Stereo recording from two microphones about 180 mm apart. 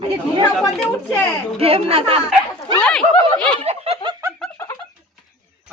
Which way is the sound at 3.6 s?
35° right (ahead or behind).